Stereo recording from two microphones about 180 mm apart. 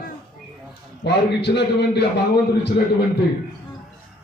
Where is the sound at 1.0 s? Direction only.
70° left (ahead or behind).